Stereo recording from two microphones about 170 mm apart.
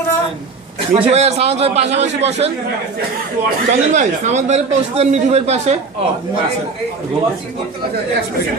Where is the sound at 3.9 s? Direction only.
45° right (ahead or behind).